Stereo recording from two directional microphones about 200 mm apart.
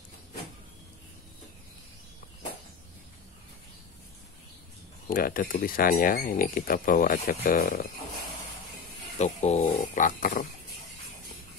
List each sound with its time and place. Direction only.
5.0 s speech: 45° left (ahead or behind)
9.2 s speech: 35° left (ahead or behind)